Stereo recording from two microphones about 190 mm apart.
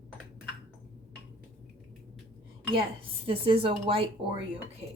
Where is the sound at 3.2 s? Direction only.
30° right (ahead or behind).